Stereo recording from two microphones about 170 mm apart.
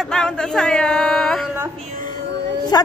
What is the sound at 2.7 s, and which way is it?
Speech, 25° left (ahead or behind).